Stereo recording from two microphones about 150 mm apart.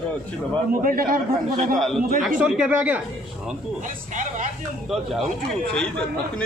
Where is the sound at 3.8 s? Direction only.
60° right (ahead or behind).